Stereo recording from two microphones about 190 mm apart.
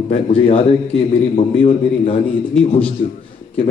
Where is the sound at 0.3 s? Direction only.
30° left (ahead or behind).